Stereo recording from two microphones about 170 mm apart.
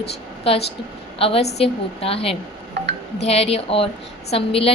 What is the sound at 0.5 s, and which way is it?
A woman's voice, 35° left (ahead or behind).